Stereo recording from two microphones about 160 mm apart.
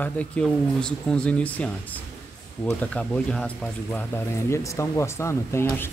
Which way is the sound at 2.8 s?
5° left (ahead or behind).